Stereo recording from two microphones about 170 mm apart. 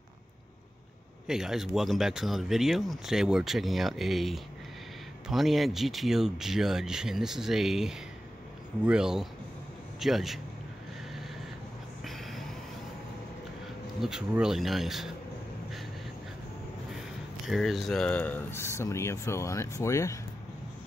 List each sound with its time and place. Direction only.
1.2 s speech: centre (ahead or behind)
12.0 s a sound: centre (ahead or behind)
14.0 s speech: 5° right (ahead or behind)
17.5 s speech: centre (ahead or behind); by 20.2 s 20° left (ahead or behind)